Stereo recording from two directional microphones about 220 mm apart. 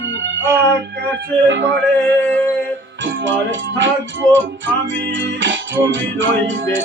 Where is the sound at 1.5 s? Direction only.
55° right (ahead or behind).